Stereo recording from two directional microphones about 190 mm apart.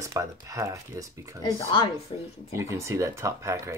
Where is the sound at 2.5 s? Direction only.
15° right (ahead or behind).